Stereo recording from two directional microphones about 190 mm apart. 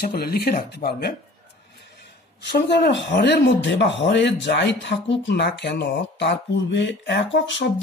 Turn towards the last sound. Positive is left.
turn(degrees=75)  # may be behind; listen again after turning